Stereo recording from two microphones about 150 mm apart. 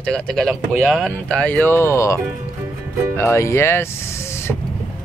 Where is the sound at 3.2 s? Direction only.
20° left (ahead or behind).